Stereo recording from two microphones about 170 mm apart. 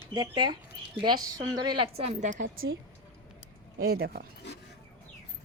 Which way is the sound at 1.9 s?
45° right (ahead or behind).